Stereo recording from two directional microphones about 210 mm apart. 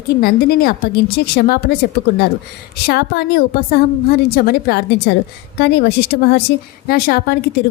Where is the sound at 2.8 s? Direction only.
50° left (ahead or behind).